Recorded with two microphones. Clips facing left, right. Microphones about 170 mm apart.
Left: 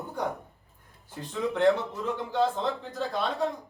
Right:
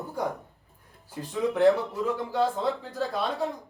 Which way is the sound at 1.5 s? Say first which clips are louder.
Right 2 dB; 5° right (ahead or behind).